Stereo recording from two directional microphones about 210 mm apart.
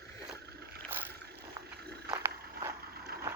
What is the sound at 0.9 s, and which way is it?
Boat, 10° right (ahead or behind).